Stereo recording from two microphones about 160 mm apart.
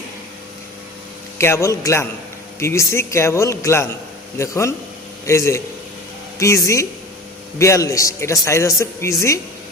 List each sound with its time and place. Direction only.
1.4 s a man's voice: 15° left (ahead or behind)